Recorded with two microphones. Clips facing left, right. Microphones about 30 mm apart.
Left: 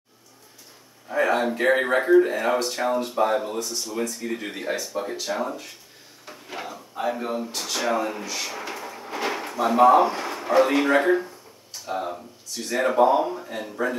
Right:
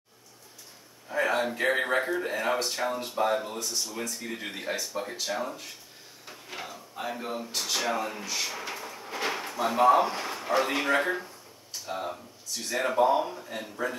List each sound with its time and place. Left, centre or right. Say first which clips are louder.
1.0 s speech: left 5 dB; centre